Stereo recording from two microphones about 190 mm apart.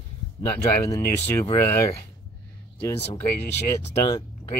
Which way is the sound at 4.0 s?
20° left (ahead or behind).